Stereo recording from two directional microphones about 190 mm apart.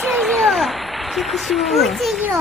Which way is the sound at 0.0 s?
Centre (ahead or behind).